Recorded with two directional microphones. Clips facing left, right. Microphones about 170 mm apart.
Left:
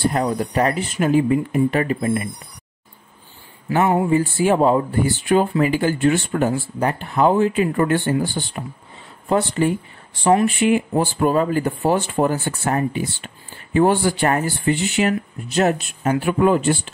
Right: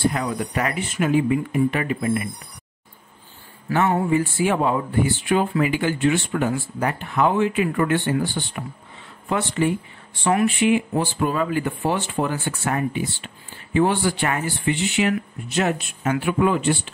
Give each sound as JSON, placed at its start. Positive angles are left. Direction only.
{"t": 0.1, "sound": "speech", "side_deg": 35}
{"t": 3.7, "sound": "a sound", "side_deg": 20}
{"t": 4.1, "sound": "speech", "side_deg": 35}